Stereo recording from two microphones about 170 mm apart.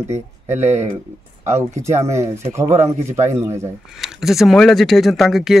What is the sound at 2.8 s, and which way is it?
Speech, 45° right (ahead or behind).